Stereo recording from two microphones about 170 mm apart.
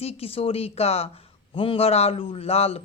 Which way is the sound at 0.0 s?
35° left (ahead or behind).